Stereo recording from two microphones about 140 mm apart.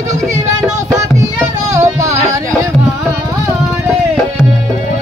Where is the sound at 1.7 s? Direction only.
20° right (ahead or behind).